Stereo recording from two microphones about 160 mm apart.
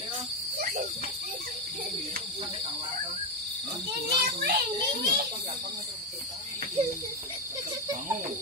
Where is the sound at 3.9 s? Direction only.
80° right.